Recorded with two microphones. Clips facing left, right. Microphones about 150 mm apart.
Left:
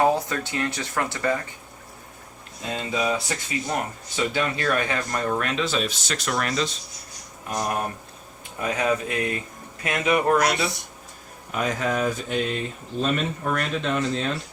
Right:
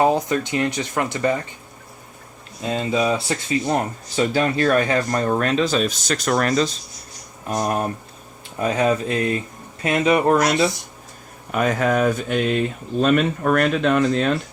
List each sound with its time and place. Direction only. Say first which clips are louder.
0.0 s speech: right 3 dB; 20° right (ahead or behind)
2.7 s speech: right 5 dB; 30° right (ahead or behind)
8.6 s speech: right 5 dB; 30° right (ahead or behind)
11.5 s speech: right 6 dB; 60° right (ahead or behind)